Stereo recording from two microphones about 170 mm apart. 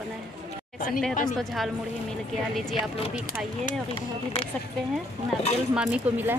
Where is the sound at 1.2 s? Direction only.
Centre (ahead or behind).